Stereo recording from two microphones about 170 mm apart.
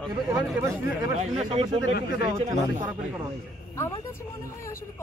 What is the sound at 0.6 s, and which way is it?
Speech, 15° right (ahead or behind).